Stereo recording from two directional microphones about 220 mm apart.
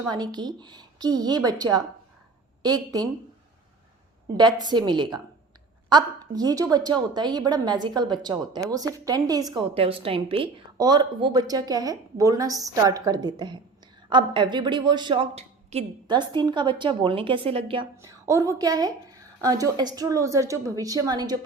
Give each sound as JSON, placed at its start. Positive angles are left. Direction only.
{"t": 0.1, "sound": "a woman's voice", "side_deg": -20}
{"t": 4.4, "sound": "a woman's voice", "side_deg": -20}
{"t": 17.9, "sound": "a woman's voice", "side_deg": -15}